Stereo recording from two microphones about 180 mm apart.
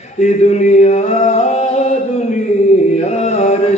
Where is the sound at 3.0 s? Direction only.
35° left (ahead or behind).